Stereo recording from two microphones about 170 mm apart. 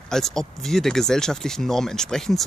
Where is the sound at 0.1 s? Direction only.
5° left (ahead or behind).